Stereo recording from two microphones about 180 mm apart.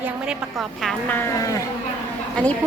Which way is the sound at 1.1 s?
15° left (ahead or behind).